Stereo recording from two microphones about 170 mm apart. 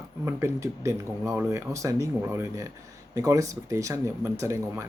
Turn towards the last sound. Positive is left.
turn(degrees=-15)  # may be behind; listen again after turning